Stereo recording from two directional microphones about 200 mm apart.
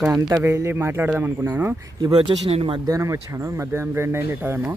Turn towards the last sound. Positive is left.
turn(degrees=-10)  # may be behind; listen again after turning